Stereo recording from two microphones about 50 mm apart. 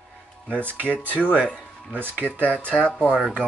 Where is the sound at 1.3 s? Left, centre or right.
Right.